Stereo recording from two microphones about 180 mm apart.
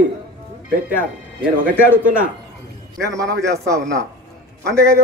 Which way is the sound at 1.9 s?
10° right (ahead or behind).